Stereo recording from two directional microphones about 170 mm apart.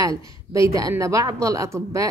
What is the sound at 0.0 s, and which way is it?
A woman's voice, 20° right (ahead or behind).